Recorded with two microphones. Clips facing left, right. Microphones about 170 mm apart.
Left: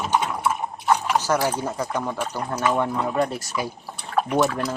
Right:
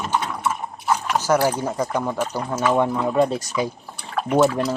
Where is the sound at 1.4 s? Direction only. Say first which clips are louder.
Right 3 dB; 5° right (ahead or behind).